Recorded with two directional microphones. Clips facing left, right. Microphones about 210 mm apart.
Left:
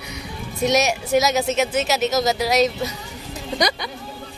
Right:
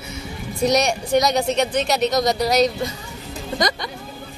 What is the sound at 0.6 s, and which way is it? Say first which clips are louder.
A woman's voice: right 1 dB; 5° left (ahead or behind).